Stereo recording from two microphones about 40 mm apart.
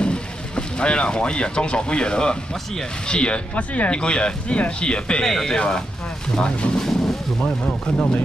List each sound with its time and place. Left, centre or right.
0.0 s speech: left
3.9 s speech: left
5.2 s speech: centre
6.9 s vehicle: centre
7.4 s speech: left